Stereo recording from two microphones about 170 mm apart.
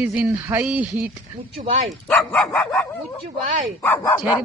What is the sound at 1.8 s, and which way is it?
Speech, 5° left (ahead or behind).